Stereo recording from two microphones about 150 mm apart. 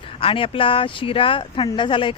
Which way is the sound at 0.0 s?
35° left (ahead or behind).